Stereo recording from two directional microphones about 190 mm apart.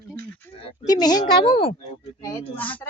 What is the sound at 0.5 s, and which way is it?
Speech, 30° left (ahead or behind).